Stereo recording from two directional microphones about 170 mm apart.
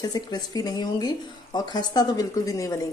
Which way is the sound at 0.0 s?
25° left (ahead or behind).